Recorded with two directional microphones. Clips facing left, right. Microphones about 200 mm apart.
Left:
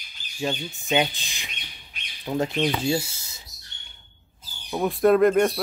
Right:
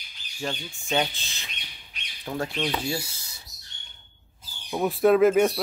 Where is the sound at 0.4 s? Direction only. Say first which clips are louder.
Left 4 dB; 15° left (ahead or behind).